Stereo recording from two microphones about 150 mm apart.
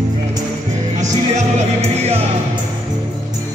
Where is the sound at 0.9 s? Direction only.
50° right (ahead or behind).